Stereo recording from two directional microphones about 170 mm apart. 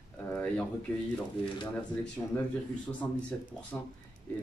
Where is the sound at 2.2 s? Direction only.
15° left (ahead or behind).